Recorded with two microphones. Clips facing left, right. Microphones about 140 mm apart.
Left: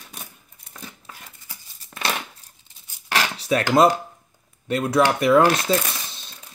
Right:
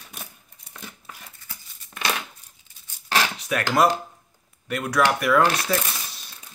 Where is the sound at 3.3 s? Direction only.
30° left (ahead or behind).